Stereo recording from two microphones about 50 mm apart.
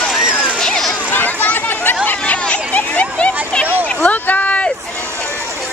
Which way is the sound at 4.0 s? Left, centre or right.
Left.